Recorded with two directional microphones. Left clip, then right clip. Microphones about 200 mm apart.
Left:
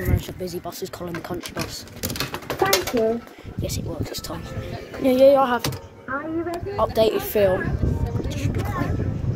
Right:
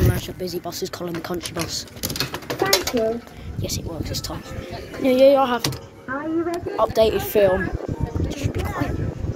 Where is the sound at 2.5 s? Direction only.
15° left (ahead or behind).